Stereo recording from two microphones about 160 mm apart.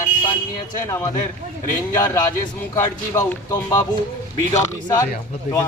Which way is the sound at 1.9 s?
20° left (ahead or behind).